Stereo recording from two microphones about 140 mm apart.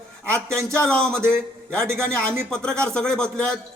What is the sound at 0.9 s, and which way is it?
Speech, 5° left (ahead or behind).